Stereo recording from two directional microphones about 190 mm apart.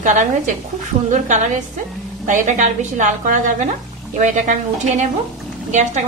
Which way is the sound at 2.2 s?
40° right (ahead or behind).